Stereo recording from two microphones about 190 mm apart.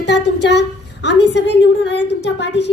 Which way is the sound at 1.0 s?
65° left (ahead or behind).